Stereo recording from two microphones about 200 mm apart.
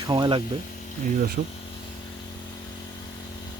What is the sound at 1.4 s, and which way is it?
Speech, 50° right (ahead or behind).